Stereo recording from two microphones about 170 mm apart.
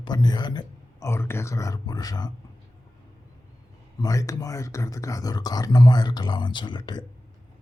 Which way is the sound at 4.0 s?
20° left (ahead or behind).